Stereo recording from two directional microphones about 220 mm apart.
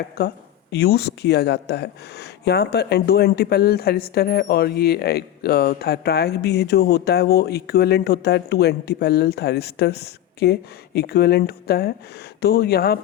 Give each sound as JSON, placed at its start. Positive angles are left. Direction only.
{"t": 0.2, "sound": "speech", "side_deg": 45}